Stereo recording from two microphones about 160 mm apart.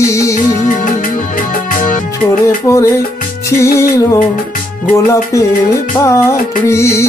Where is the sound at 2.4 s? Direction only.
20° left (ahead or behind).